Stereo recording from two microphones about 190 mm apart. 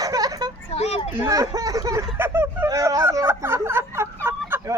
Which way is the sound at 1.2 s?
15° right (ahead or behind).